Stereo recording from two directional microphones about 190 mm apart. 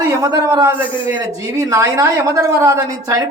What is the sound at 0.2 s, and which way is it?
A man's voice, 15° right (ahead or behind).